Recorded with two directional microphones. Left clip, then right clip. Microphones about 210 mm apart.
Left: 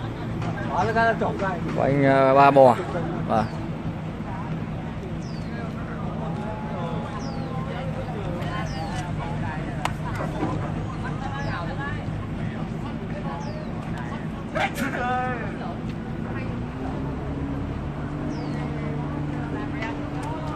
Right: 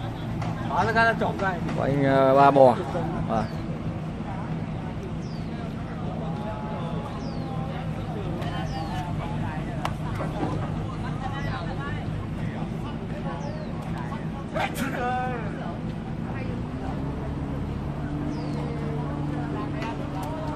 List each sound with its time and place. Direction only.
0.7 s speech: 10° right (ahead or behind)
1.8 s speech: 15° left (ahead or behind)
14.6 s vehicle: 15° right (ahead or behind)